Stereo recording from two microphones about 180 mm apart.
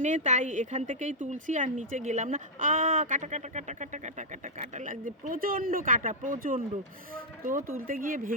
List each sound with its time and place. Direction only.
0.0 s speech: 45° right (ahead or behind)
7.8 s speech: 50° right (ahead or behind)